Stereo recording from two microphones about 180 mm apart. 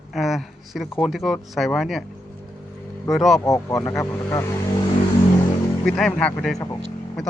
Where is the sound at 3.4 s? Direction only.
15° left (ahead or behind).